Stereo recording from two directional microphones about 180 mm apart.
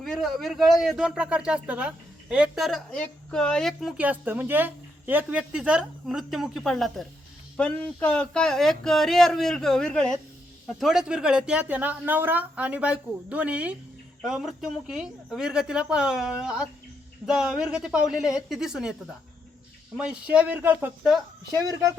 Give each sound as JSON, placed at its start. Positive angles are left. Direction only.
{"t": 0.0, "sound": "a woman's voice", "side_deg": 0}
{"t": 21.5, "sound": "speech", "side_deg": -20}